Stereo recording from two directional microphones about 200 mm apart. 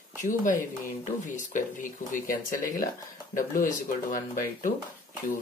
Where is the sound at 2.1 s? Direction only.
45° left (ahead or behind).